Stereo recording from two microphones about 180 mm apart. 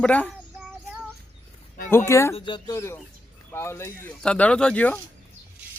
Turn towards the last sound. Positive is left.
turn(degrees=5)  # may be behind; listen again after turning